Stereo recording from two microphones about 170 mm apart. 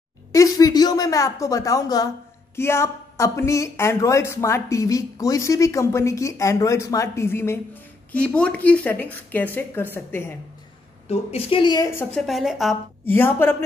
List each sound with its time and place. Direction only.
0.3 s speech: 20° left (ahead or behind)
11.1 s speech: 35° left (ahead or behind); by 12.1 s 20° left (ahead or behind)
12.1 s a woman's voice: centre (ahead or behind)
13.0 s speech: 10° left (ahead or behind)